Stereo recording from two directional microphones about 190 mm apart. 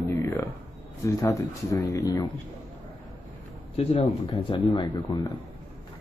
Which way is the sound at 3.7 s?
30° left (ahead or behind).